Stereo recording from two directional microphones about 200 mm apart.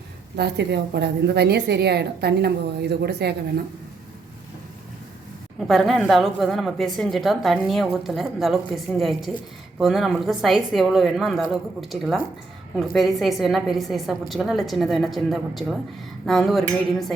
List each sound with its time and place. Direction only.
0.3 s a woman's voice: 55° right (ahead or behind)
5.5 s a woman's voice: centre (ahead or behind)